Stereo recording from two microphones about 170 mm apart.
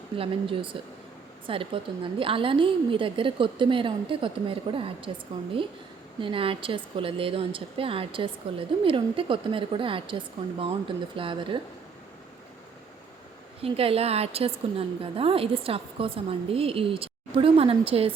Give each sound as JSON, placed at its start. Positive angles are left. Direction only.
{"t": 0.2, "sound": "a woman's voice", "side_deg": -30}
{"t": 6.1, "sound": "a woman's voice", "side_deg": -30}
{"t": 13.6, "sound": "a woman's voice", "side_deg": -35}